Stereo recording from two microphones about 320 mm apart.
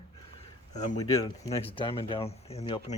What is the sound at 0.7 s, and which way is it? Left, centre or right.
Speech, centre.